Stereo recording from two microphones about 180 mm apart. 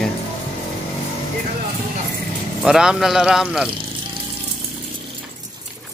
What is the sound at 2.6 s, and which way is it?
Speech, 5° right (ahead or behind).